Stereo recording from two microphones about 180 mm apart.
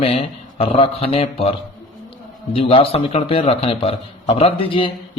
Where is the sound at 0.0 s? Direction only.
30° left (ahead or behind).